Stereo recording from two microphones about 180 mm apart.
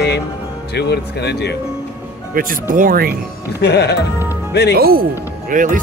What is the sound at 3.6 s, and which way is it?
Speech, 65° left (ahead or behind).